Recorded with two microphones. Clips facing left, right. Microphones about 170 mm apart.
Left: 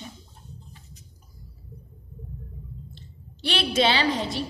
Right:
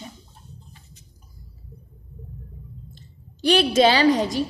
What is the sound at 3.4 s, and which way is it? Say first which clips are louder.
A woman's voice: right 7 dB; 45° right (ahead or behind).